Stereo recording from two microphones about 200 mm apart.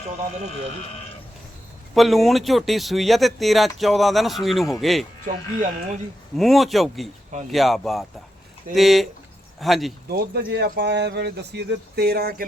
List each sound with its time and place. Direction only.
2.0 s speech: centre (ahead or behind)
5.3 s speech: 40° right (ahead or behind)
6.3 s speech: centre (ahead or behind)
10.1 s speech: 55° right (ahead or behind)